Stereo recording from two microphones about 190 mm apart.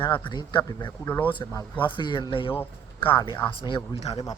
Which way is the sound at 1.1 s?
10° left (ahead or behind).